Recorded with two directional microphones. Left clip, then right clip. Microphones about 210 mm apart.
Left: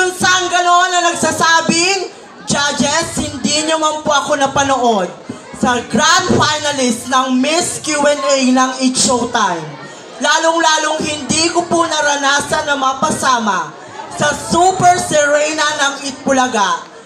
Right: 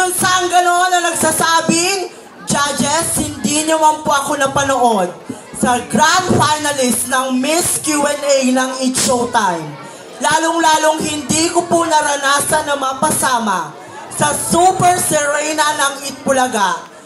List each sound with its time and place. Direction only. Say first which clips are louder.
0.0 s music: left 1 dB; 30° right (ahead or behind)
5.6 s speech: right 1 dB; 30° right (ahead or behind)
10.2 s music: left 1 dB; 30° right (ahead or behind)
14.1 s speech: left 1 dB; 30° right (ahead or behind)